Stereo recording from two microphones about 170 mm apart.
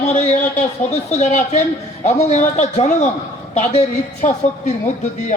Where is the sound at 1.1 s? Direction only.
45° left (ahead or behind).